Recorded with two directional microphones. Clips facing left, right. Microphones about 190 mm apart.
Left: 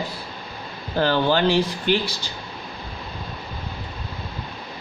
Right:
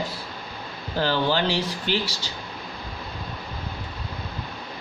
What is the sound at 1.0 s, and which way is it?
Speech, 50° left (ahead or behind).